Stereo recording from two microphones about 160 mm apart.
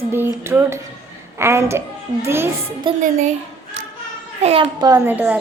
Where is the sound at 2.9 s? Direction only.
30° right (ahead or behind).